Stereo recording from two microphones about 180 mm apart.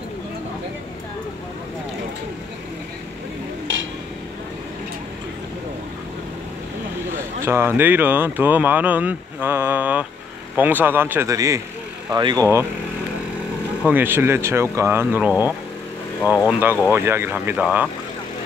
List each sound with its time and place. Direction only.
7.4 s speech: 10° right (ahead or behind)
13.8 s speech: 10° right (ahead or behind)